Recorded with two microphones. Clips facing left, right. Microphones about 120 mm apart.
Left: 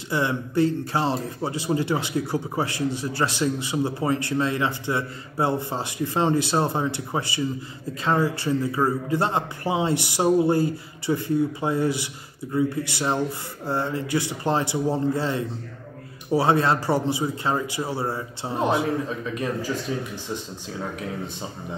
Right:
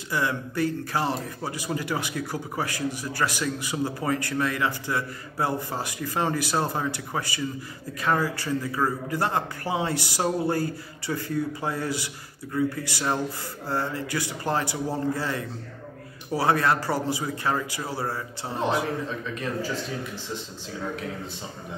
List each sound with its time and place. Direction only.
0.1 s speech: 25° left (ahead or behind)